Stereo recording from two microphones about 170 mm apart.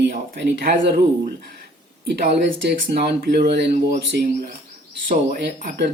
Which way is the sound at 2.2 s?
75° right (ahead or behind).